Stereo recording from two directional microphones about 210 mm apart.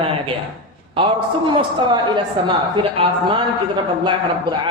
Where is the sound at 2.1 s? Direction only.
20° right (ahead or behind).